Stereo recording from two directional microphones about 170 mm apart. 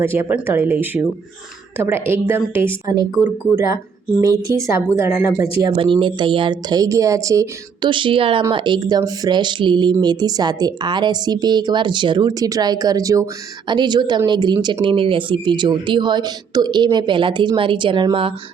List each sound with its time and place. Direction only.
0.0 s speech: 15° right (ahead or behind)
4.2 s speech: 20° right (ahead or behind)
5.7 s speech: 30° right (ahead or behind)